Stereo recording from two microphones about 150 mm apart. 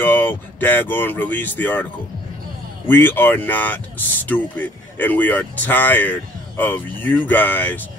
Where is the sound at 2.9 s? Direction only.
15° left (ahead or behind).